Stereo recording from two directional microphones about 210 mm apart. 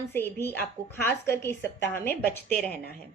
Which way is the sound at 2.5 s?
45° left (ahead or behind).